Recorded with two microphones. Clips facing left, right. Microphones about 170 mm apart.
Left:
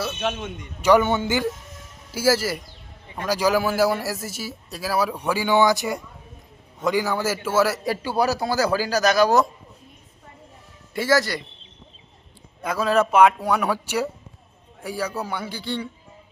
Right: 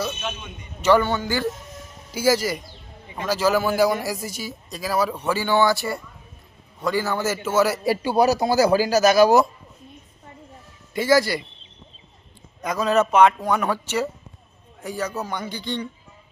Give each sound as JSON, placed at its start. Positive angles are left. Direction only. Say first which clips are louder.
{"t": 0.2, "sound": "a man's voice", "louder": "left 6 dB", "side_deg": 70}
{"t": 0.8, "sound": "a man's voice", "louder": "left 1 dB", "side_deg": 15}
{"t": 2.1, "sound": "a man's voice", "louder": "right 1 dB", "side_deg": 5}
{"t": 7.9, "sound": "speech", "louder": "right 4 dB", "side_deg": -15}
{"t": 10.9, "sound": "speech", "louder": "right 2 dB", "side_deg": 0}
{"t": 12.6, "sound": "a man's voice", "louder": "even", "side_deg": 5}